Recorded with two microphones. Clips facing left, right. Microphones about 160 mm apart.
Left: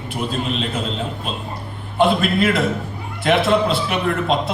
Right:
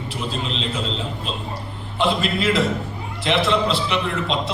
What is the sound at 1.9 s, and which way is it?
A man's voice, 55° left (ahead or behind).